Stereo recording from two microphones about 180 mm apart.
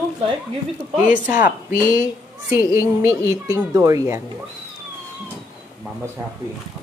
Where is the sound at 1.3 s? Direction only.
50° left (ahead or behind).